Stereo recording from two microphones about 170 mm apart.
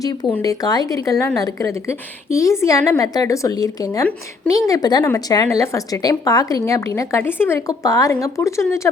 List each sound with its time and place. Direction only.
0.0 s speech: 20° left (ahead or behind)